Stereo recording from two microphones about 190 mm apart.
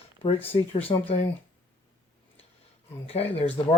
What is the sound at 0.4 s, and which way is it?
Speech, 30° left (ahead or behind).